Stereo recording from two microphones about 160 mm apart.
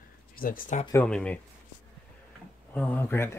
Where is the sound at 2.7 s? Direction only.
10° left (ahead or behind).